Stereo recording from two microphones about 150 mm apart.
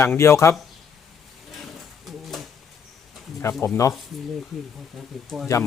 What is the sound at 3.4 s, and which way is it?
Speech, 15° left (ahead or behind).